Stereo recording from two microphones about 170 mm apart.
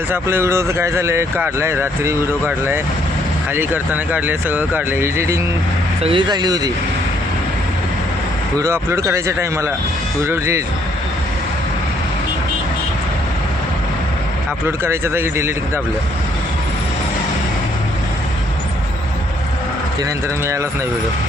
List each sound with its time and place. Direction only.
0.1 s speech: 15° right (ahead or behind)
6.0 s speech: 30° right (ahead or behind)
8.5 s speech: 15° right (ahead or behind)
14.8 s speech: 15° right (ahead or behind)